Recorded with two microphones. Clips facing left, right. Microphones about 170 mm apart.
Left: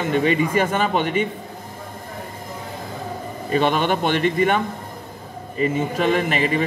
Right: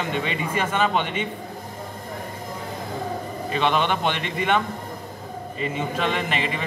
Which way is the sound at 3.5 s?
45° left (ahead or behind).